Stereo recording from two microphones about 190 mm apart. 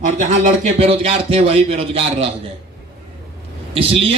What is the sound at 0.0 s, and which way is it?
A man's voice, 40° right (ahead or behind).